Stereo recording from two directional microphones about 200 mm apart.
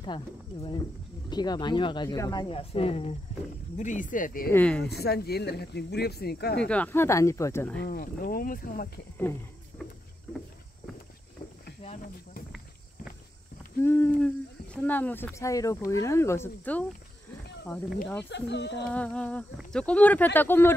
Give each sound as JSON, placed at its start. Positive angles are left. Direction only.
{"t": 0.0, "sound": "speech", "side_deg": 25}
{"t": 4.5, "sound": "speech", "side_deg": 5}
{"t": 4.8, "sound": "speech", "side_deg": 55}
{"t": 6.7, "sound": "speech", "side_deg": 10}
{"t": 7.8, "sound": "speech", "side_deg": 45}
{"t": 13.8, "sound": "speech", "side_deg": 10}
{"t": 18.3, "sound": "speech", "side_deg": 60}
{"t": 18.9, "sound": "speech", "side_deg": 5}